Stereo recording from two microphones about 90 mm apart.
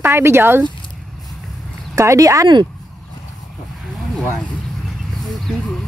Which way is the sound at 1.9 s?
35° right (ahead or behind).